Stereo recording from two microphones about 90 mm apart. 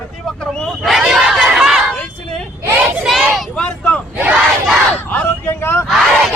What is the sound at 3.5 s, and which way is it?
Vehicle, 15° left (ahead or behind).